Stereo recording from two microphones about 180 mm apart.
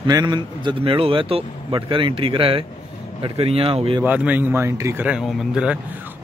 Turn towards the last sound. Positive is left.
turn(degrees=-5)  # may be behind; listen again after turning